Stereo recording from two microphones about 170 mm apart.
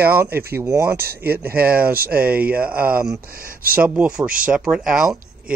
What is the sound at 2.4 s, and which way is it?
Speech, 60° right (ahead or behind).